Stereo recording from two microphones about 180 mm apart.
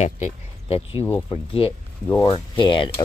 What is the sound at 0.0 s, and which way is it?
Speech, 35° left (ahead or behind).